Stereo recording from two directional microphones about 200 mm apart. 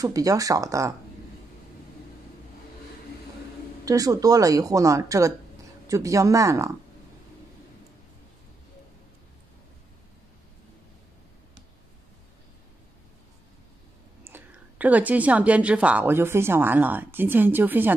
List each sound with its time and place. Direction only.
0.0 s speech: 15° right (ahead or behind)
3.8 s speech: 15° right (ahead or behind)
14.2 s speech: 10° right (ahead or behind)